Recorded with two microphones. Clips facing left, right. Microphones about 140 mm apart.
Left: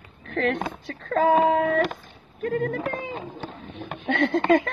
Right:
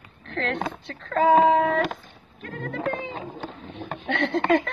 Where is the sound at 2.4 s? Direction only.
60° left (ahead or behind).